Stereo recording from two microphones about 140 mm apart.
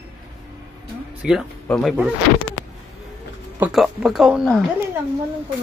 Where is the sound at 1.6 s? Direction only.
5° left (ahead or behind).